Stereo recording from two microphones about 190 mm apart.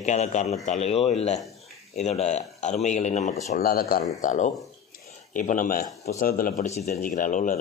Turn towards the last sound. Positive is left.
turn(degrees=45)  # may be behind; listen again after turning